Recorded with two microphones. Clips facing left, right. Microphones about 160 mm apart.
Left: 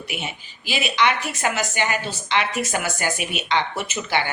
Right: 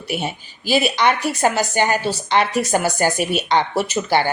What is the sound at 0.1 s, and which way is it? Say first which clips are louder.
A woman's voice: right 10 dB; 40° right (ahead or behind).